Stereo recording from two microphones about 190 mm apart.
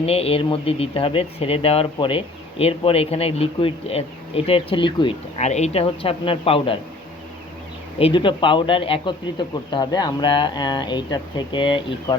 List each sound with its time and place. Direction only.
0.0 s speech: 30° left (ahead or behind)
5.4 s a man's voice: 35° left (ahead or behind)
7.9 s a man's voice: 25° left (ahead or behind)